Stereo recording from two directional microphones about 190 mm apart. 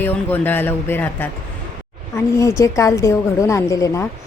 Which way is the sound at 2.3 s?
15° left (ahead or behind).